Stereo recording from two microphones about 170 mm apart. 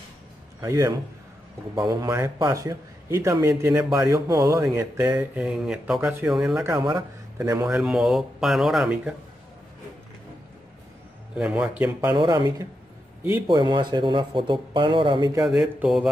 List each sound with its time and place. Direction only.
0.6 s a man's voice: 20° right (ahead or behind)
5.3 s speech: 5° right (ahead or behind)
6.6 s a man's voice: 20° right (ahead or behind)
7.6 s speech: 5° right (ahead or behind)
11.3 s speech: 5° right (ahead or behind)
12.0 s a man's voice: 20° right (ahead or behind)
15.4 s speech: 5° right (ahead or behind)